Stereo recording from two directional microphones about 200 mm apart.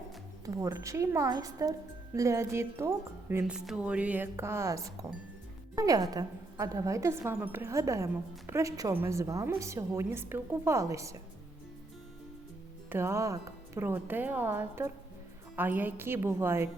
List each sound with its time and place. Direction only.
0.4 s a woman's voice: 15° right (ahead or behind)
12.9 s a woman's voice: 15° right (ahead or behind)